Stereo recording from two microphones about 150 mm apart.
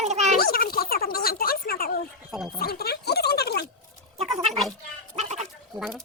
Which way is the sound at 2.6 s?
90° left.